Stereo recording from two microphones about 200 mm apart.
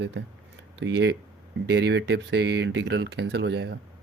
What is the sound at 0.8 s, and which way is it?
Speech, 60° right (ahead or behind).